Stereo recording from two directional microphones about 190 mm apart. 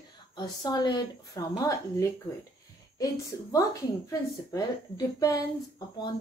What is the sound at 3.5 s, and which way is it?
A woman's voice, 20° left (ahead or behind).